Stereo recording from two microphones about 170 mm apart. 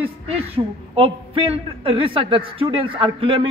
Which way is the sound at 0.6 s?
25° right (ahead or behind).